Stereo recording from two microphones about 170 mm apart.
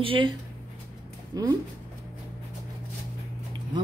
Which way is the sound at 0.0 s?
30° right (ahead or behind).